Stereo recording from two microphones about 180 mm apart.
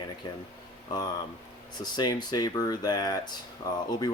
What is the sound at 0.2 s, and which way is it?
Speech, 25° left (ahead or behind).